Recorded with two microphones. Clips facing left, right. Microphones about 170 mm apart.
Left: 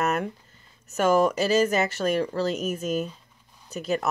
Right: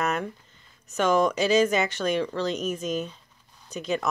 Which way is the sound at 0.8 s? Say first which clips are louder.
Left 1 dB; 5° left (ahead or behind).